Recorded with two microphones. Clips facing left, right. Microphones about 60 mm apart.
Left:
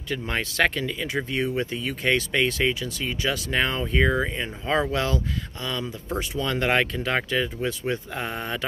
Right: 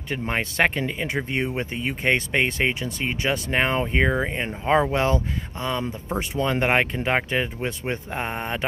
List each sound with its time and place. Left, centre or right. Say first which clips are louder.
0.3 s speech: right 1 dB; right